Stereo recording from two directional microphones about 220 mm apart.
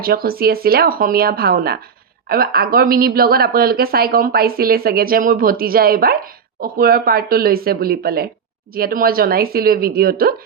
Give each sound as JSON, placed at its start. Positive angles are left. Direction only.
{"t": 0.0, "sound": "speech", "side_deg": -45}